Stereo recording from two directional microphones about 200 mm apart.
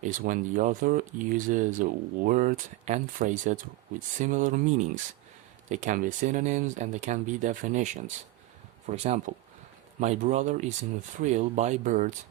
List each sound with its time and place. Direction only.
0.0 s speech: 40° right (ahead or behind)